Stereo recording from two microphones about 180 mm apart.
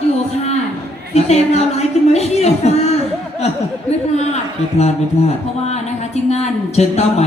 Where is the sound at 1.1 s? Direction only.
40° left (ahead or behind).